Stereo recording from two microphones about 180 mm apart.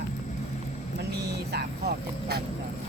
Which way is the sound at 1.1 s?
65° right (ahead or behind).